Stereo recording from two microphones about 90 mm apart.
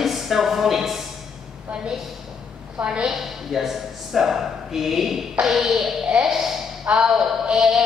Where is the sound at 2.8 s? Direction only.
5° right (ahead or behind).